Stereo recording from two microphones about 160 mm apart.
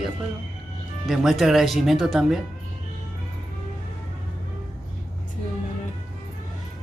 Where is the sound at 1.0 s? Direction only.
Centre (ahead or behind).